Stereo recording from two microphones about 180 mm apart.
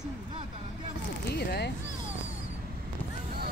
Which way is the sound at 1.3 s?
60° left (ahead or behind).